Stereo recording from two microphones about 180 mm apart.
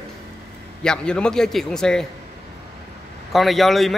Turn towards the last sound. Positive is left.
turn(degrees=0)  # may be behind; listen again after turning